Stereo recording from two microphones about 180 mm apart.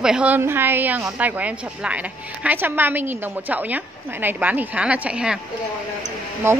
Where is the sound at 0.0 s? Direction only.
5° right (ahead or behind).